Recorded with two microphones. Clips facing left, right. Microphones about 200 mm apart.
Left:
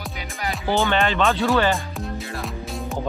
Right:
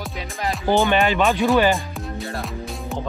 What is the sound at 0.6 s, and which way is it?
Speech, 15° right (ahead or behind).